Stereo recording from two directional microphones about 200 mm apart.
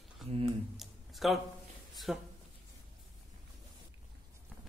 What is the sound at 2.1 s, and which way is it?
Speech, centre (ahead or behind).